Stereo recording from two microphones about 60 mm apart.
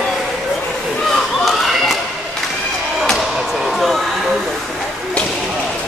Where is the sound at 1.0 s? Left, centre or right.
Centre.